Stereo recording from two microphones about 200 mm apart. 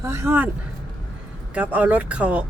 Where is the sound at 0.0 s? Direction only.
15° right (ahead or behind).